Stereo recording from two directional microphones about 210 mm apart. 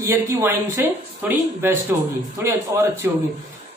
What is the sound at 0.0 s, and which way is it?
Speech, 15° right (ahead or behind).